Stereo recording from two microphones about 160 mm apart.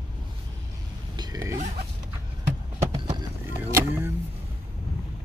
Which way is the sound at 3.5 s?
15° right (ahead or behind).